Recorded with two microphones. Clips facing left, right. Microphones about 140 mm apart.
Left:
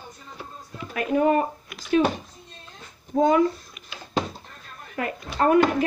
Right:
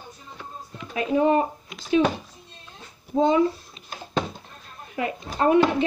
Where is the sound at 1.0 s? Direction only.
25° right (ahead or behind).